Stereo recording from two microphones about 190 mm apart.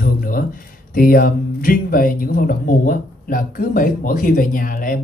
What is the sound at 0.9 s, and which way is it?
Speech, 50° left (ahead or behind).